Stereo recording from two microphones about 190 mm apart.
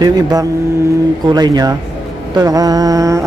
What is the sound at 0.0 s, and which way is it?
Speech, 20° right (ahead or behind).